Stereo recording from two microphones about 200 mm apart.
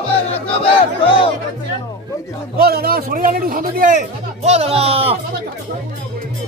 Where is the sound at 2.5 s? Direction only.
50° right (ahead or behind); by 5.1 s 30° right (ahead or behind).